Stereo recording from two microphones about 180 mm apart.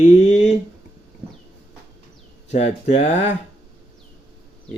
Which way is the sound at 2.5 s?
40° left (ahead or behind).